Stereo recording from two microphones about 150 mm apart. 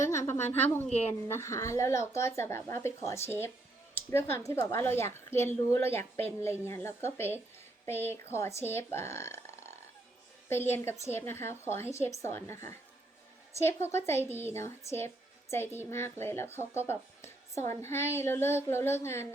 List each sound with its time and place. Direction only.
0.0 s a child's voice: 20° left (ahead or behind)